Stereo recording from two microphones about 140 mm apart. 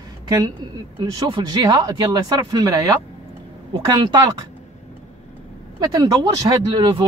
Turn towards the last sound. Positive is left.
turn(degrees=-30)  # may be behind; listen again after turning